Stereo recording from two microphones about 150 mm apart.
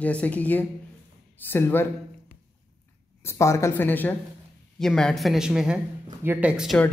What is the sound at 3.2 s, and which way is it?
A woman's voice, 20° left (ahead or behind).